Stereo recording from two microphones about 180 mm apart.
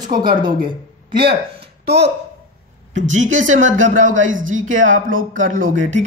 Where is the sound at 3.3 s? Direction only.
90° right.